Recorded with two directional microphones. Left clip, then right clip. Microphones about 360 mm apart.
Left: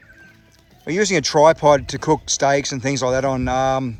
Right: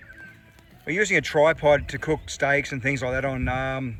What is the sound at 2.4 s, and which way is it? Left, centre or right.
Speech, centre.